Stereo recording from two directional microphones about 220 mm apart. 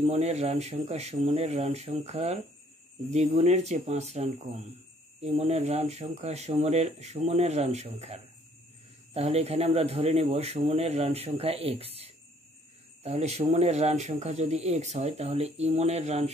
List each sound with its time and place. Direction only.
0.0 s speech: 30° right (ahead or behind)